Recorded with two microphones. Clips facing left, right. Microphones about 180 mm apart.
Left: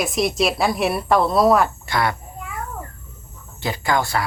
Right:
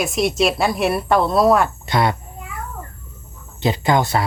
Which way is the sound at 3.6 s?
20° right (ahead or behind).